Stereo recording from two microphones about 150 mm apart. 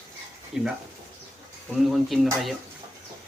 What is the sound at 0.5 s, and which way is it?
Speech, centre (ahead or behind).